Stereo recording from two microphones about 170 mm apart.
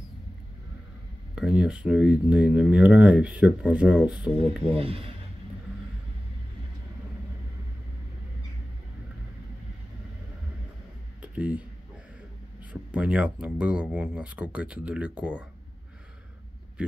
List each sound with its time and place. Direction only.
1.3 s speech: 5° right (ahead or behind)
4.6 s speech: 35° right (ahead or behind)
11.1 s a sound: 10° right (ahead or behind)
12.9 s speech: 5° right (ahead or behind)